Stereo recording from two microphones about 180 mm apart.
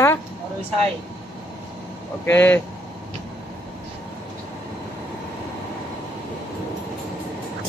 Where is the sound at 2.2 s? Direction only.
15° left (ahead or behind).